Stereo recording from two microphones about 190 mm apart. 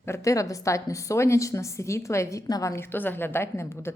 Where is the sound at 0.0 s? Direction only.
15° left (ahead or behind).